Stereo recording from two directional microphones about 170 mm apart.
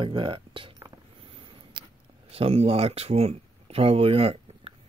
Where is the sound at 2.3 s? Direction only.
35° right (ahead or behind).